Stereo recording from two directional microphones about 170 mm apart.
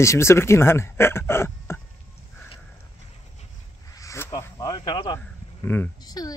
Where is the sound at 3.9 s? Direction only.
15° left (ahead or behind).